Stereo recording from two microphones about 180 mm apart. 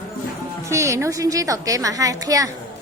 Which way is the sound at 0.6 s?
15° right (ahead or behind).